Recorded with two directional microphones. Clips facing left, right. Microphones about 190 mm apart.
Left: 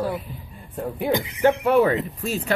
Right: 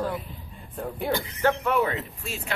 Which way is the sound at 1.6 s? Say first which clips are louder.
Left 7 dB; 35° left (ahead or behind).